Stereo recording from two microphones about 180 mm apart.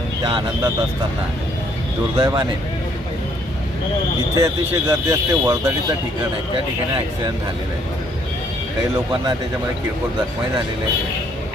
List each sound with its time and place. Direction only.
2.1 s speech: 20° right (ahead or behind)
4.4 s speech: 15° right (ahead or behind)